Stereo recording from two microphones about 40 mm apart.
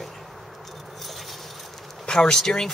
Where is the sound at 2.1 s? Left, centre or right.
Centre.